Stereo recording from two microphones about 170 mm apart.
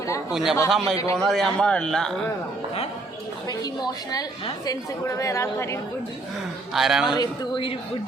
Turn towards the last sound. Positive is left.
turn(degrees=30)  # may be behind; listen again after turning